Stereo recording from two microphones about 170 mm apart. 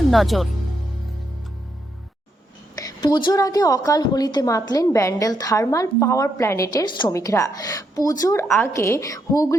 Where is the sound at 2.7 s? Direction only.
25° left (ahead or behind).